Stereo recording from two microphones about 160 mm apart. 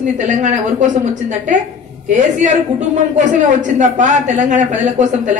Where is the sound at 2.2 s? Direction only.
50° right (ahead or behind).